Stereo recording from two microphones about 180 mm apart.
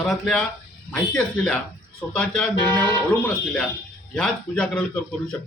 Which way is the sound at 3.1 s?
5° left (ahead or behind).